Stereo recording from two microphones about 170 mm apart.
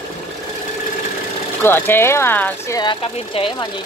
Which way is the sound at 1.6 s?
15° left (ahead or behind).